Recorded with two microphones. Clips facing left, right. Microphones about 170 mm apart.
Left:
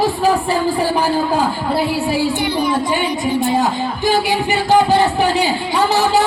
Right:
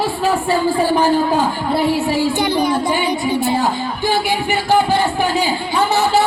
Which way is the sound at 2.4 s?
45° right (ahead or behind).